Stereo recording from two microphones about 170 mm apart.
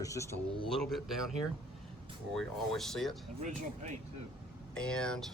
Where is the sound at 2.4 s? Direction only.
Centre (ahead or behind).